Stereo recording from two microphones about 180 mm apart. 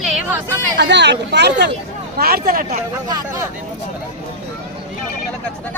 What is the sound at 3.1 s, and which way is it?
Speech, 20° right (ahead or behind).